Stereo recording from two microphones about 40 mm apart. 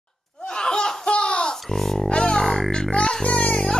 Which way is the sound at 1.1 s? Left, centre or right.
Left.